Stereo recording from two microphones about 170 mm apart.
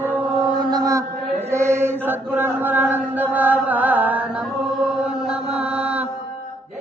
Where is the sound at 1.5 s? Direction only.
15° right (ahead or behind).